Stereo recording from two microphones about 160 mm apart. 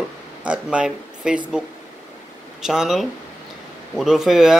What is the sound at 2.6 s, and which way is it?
Speech, 5° right (ahead or behind).